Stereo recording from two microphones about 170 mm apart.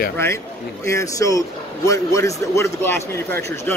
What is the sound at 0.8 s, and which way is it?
Speech, 20° left (ahead or behind).